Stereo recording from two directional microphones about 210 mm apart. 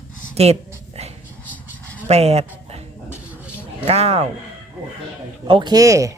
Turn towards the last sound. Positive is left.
turn(degrees=-15)  # may be behind; listen again after turning